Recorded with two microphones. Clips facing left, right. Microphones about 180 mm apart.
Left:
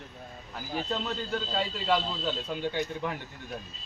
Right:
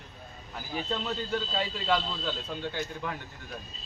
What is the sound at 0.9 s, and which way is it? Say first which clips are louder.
A man's voice: right 2 dB; centre (ahead or behind).